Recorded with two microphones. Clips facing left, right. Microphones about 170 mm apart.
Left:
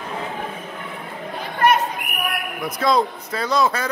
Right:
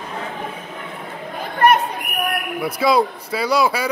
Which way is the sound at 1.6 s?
60° right (ahead or behind).